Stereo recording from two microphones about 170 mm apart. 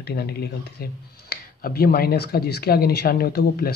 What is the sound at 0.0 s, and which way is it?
Speech, 65° left (ahead or behind).